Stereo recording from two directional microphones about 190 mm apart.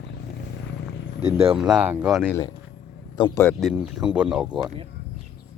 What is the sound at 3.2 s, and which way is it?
Speech, 20° left (ahead or behind).